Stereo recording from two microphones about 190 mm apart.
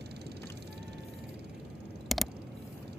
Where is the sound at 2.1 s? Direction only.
Centre (ahead or behind).